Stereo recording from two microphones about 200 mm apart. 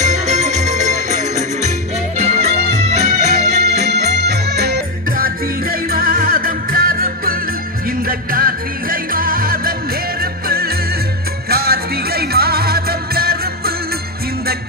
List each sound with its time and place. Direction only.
0.0 s music: 35° right (ahead or behind)
3.7 s music: 55° right (ahead or behind)
11.4 s music: 50° right (ahead or behind)